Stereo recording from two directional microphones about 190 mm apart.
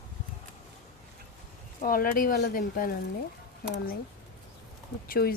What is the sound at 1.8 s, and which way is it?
Speech, 50° left (ahead or behind).